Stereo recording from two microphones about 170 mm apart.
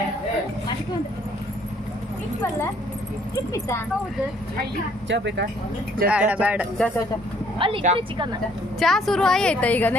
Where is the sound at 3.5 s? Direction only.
15° left (ahead or behind).